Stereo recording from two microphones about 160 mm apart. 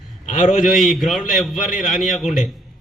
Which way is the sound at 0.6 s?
Centre (ahead or behind).